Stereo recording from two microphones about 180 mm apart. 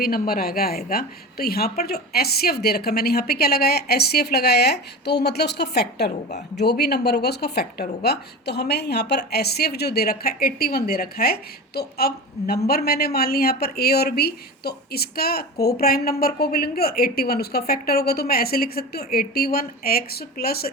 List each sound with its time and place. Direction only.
0.0 s speech: 55° left (ahead or behind)